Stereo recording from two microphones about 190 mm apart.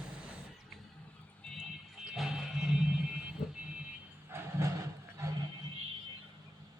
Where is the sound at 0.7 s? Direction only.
Centre (ahead or behind).